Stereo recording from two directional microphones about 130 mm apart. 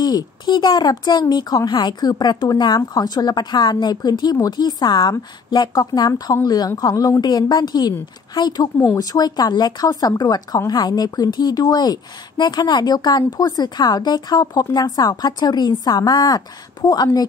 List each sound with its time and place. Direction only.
0.0 s speech: 30° left (ahead or behind)